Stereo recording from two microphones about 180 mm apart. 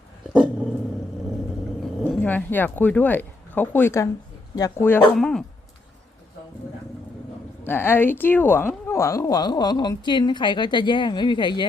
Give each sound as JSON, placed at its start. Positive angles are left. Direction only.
{"t": 0.3, "sound": "dog", "side_deg": -5}
{"t": 2.0, "sound": "a woman's voice", "side_deg": 10}
{"t": 5.1, "sound": "speech", "side_deg": 0}
{"t": 7.6, "sound": "a woman's voice", "side_deg": 10}